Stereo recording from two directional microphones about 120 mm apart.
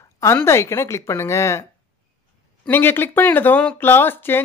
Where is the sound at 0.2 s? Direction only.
25° left (ahead or behind).